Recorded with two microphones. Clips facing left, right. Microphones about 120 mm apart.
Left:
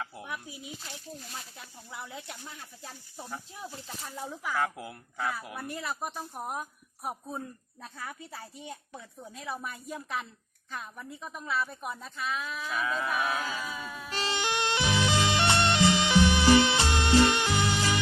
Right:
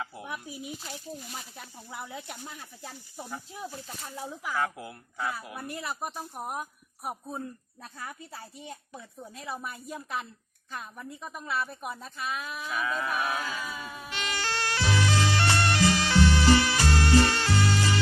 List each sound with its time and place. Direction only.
1.9 s a woman's voice: 10° right (ahead or behind)
4.2 s a woman's voice: 5° right (ahead or behind)
14.1 s music: 30° left (ahead or behind)
14.3 s music: 20° left (ahead or behind)